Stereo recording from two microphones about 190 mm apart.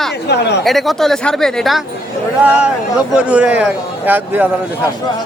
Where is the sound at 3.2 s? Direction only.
5° right (ahead or behind).